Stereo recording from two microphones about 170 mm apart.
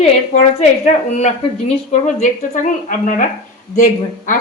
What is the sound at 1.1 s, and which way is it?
A woman's voice, 40° left (ahead or behind).